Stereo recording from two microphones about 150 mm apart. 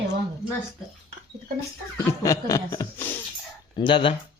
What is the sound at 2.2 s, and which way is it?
Speech, 20° left (ahead or behind).